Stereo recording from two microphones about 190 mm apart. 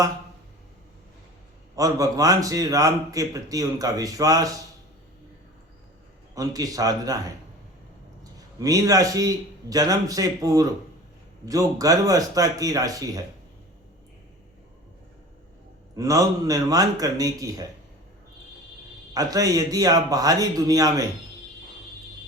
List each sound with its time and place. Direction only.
1.7 s a man's voice: 20° right (ahead or behind)
6.3 s a man's voice: 20° right (ahead or behind)
16.0 s a man's voice: 20° right (ahead or behind)
19.1 s a man's voice: 20° right (ahead or behind)